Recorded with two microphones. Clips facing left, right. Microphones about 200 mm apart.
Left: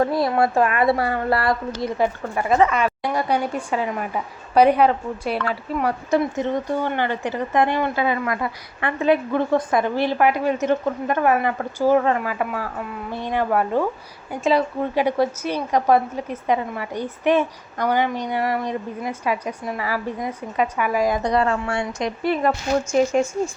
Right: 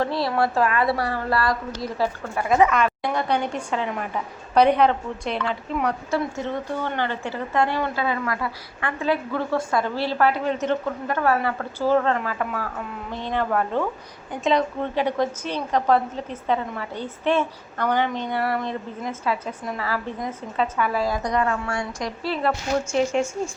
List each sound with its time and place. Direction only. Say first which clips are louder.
0.3 s a woman's voice: left 3 dB; 25° left (ahead or behind)
2.7 s a woman's voice: left 1 dB; 10° left (ahead or behind)
6.1 s a woman's voice: left 5 dB; 20° left (ahead or behind)
21.2 s a woman's voice: left 3 dB; 30° left (ahead or behind)